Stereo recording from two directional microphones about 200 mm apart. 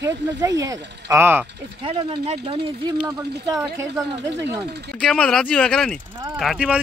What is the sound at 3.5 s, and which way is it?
Speech, 15° right (ahead or behind).